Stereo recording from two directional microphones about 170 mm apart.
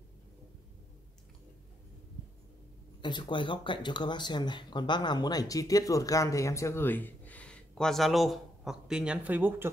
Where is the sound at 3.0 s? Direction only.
25° left (ahead or behind).